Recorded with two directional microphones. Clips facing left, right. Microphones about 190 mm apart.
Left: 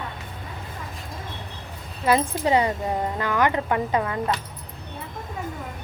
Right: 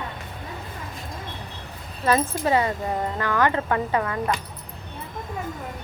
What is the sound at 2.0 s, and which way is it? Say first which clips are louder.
Speech: left 1 dB; 15° left (ahead or behind).